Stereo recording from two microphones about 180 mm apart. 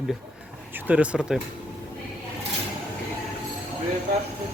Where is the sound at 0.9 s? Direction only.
5° right (ahead or behind).